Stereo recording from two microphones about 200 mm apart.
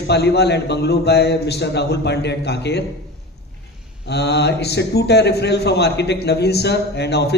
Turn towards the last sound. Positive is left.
turn(degrees=55)  # may be behind; listen again after turning